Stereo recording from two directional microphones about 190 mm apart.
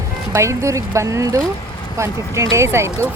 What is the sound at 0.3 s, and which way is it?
Speech, 15° right (ahead or behind).